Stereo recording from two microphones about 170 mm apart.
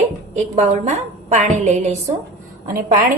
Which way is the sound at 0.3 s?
40° right (ahead or behind).